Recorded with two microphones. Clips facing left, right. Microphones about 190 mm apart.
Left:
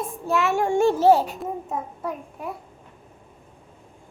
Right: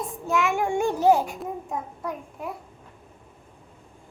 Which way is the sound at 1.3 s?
5° left (ahead or behind).